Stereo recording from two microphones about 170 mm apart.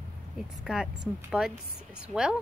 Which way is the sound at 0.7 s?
5° right (ahead or behind).